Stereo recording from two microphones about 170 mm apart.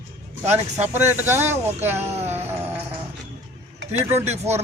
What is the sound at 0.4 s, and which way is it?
Speech, 40° right (ahead or behind).